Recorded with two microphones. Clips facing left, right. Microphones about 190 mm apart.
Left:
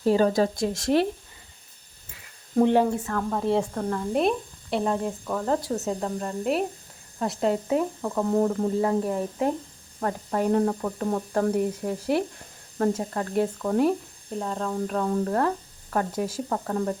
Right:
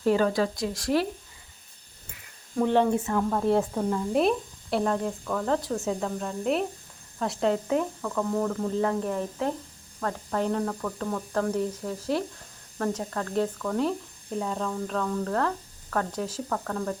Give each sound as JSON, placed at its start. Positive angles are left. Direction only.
{"t": 0.0, "sound": "speech", "side_deg": 35}
{"t": 2.9, "sound": "speech", "side_deg": -15}
{"t": 3.2, "sound": "speech", "side_deg": 0}
{"t": 8.0, "sound": "speech", "side_deg": 20}
{"t": 8.8, "sound": "speech", "side_deg": 10}
{"t": 10.7, "sound": "speech", "side_deg": 25}
{"t": 11.5, "sound": "speech", "side_deg": 10}
{"t": 14.3, "sound": "speech", "side_deg": 0}
{"t": 14.7, "sound": "speech", "side_deg": 15}
{"t": 15.0, "sound": "speech", "side_deg": 30}
{"t": 15.3, "sound": "speech", "side_deg": 15}
{"t": 16.5, "sound": "speech", "side_deg": 20}